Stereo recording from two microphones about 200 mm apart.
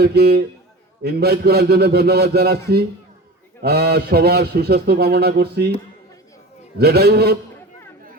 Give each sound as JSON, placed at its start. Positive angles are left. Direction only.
{"t": 0.0, "sound": "a man's voice", "side_deg": -55}
{"t": 6.7, "sound": "a man's voice", "side_deg": -50}